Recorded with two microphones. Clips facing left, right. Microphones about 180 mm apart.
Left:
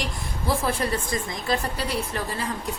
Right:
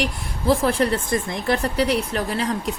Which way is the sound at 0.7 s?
60° right (ahead or behind).